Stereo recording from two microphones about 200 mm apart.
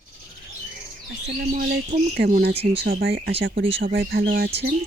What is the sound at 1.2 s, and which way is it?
Speech, 50° right (ahead or behind).